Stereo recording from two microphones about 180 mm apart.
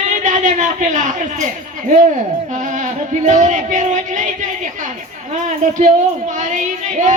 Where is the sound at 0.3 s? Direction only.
40° right (ahead or behind).